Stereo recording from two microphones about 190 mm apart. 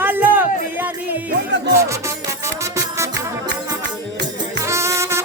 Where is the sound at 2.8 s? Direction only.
15° right (ahead or behind).